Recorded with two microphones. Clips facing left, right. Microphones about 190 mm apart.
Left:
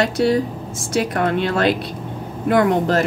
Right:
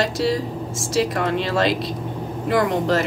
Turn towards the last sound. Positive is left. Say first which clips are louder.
# left 3 dB
turn(degrees=50)  # may be behind; listen again after turning